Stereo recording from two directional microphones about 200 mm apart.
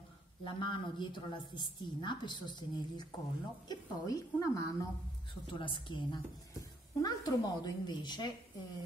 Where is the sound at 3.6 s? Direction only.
20° left (ahead or behind).